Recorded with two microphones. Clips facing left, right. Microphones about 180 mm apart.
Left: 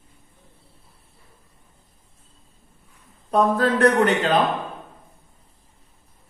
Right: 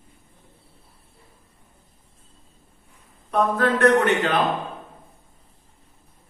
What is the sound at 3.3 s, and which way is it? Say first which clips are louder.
Speech: left 2 dB; 30° left (ahead or behind).